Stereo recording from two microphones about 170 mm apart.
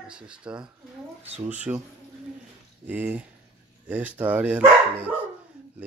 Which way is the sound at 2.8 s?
10° right (ahead or behind).